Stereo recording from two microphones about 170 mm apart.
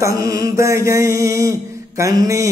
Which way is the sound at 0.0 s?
20° right (ahead or behind).